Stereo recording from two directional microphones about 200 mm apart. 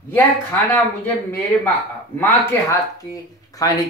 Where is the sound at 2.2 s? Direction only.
10° left (ahead or behind).